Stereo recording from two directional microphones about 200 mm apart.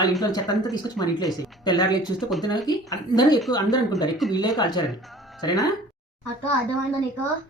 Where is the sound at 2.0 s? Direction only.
Centre (ahead or behind).